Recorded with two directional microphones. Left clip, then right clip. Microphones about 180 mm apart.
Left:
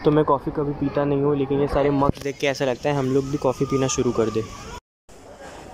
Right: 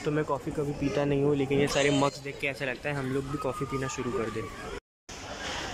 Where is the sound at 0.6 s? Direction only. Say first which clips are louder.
Left 6 dB; centre (ahead or behind).